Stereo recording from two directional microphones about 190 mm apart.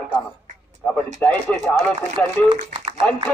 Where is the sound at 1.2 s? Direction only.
5° left (ahead or behind).